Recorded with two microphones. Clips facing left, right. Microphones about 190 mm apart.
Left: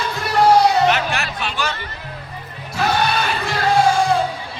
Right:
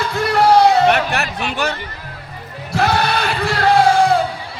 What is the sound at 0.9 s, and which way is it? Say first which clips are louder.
Music: right 3 dB; 60° right (ahead or behind).